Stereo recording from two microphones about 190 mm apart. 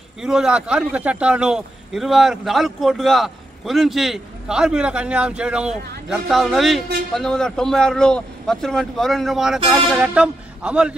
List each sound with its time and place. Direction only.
0.2 s speech: 5° right (ahead or behind)